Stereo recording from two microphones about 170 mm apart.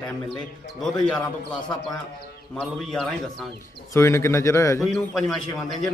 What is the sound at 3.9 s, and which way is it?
Speech, 15° left (ahead or behind).